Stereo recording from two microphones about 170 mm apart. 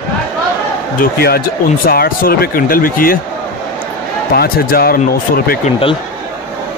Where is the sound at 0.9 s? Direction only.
65° left (ahead or behind).